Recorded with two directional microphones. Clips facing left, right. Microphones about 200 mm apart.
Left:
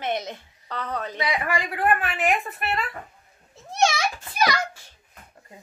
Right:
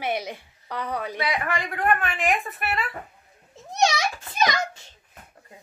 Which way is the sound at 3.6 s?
15° right (ahead or behind).